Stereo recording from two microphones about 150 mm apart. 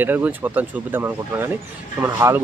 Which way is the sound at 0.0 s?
10° right (ahead or behind).